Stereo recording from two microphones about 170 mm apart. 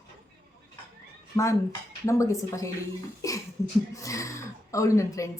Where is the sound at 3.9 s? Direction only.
20° left (ahead or behind).